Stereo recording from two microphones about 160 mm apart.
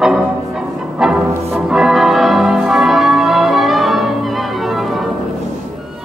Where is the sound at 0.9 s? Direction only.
5° right (ahead or behind).